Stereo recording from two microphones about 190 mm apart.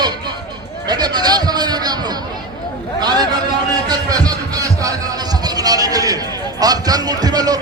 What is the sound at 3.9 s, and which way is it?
Speech, 20° right (ahead or behind).